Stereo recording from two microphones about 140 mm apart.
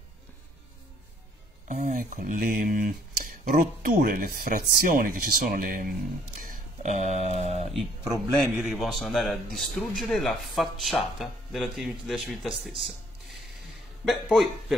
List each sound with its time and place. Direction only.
1.7 s speech: 70° right (ahead or behind); by 7.7 s 50° right (ahead or behind)
8.5 s speech: 5° right (ahead or behind)
14.0 s speech: centre (ahead or behind)